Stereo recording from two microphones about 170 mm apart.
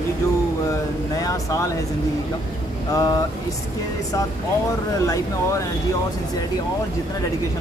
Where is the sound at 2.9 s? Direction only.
20° left (ahead or behind).